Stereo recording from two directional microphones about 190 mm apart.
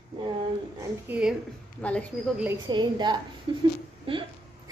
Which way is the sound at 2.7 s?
25° right (ahead or behind).